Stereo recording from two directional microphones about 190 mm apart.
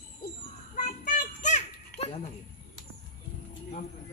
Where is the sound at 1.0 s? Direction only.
45° left (ahead or behind).